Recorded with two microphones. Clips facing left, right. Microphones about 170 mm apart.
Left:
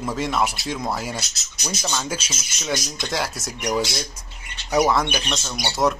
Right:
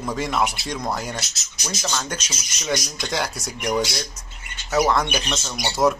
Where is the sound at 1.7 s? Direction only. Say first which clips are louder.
Left 1 dB; 15° left (ahead or behind).